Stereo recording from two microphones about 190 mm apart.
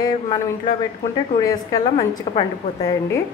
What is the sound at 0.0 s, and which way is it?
Speech, 25° left (ahead or behind).